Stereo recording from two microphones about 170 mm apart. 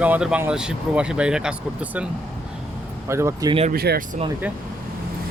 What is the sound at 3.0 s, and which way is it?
Speech, 15° right (ahead or behind).